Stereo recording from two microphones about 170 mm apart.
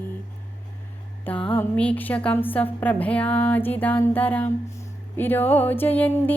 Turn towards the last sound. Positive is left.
turn(degrees=10)  # may be behind; listen again after turning